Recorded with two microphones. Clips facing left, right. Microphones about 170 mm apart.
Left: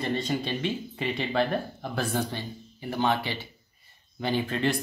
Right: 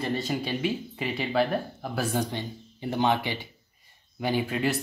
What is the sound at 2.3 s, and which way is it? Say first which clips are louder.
Speech: right 2 dB; 20° right (ahead or behind).